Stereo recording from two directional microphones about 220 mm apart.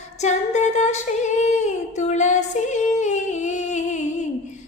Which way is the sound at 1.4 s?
30° left (ahead or behind).